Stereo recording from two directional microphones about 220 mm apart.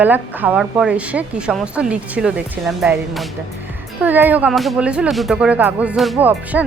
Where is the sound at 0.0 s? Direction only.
5° right (ahead or behind).